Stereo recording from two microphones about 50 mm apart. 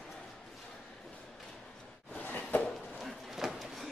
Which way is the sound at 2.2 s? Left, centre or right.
Left.